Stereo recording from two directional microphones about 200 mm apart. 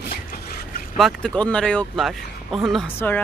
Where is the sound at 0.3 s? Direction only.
45° left (ahead or behind).